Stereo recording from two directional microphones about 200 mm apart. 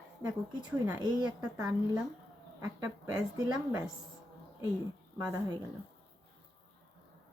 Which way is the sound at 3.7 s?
10° right (ahead or behind).